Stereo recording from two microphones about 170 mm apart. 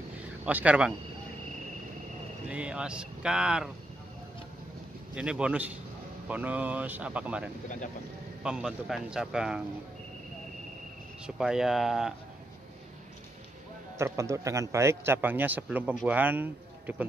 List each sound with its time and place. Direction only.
0.5 s a man's voice: 10° right (ahead or behind)
2.5 s speech: 5° right (ahead or behind)
5.1 s a man's voice: 5° right (ahead or behind)
8.5 s speech: 5° right (ahead or behind)
11.2 s speech: 5° right (ahead or behind)
13.9 s a man's voice: 15° right (ahead or behind)